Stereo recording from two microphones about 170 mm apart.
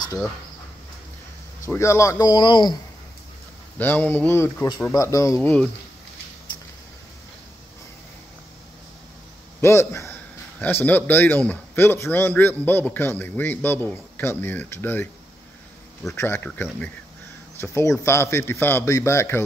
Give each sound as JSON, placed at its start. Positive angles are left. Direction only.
{"t": 0.0, "sound": "speech", "side_deg": 20}
{"t": 1.7, "sound": "speech", "side_deg": 15}
{"t": 3.7, "sound": "a man's voice", "side_deg": 10}
{"t": 9.6, "sound": "a man's voice", "side_deg": 15}
{"t": 16.1, "sound": "a man's voice", "side_deg": 15}